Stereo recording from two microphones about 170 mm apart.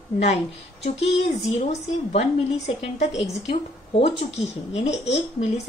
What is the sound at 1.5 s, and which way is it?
Speech, 40° left (ahead or behind).